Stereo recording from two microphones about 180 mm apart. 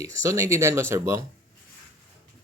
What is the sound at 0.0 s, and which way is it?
Speech, 15° right (ahead or behind).